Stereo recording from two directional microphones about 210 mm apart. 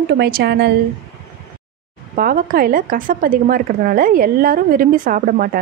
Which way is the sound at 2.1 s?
45° right (ahead or behind).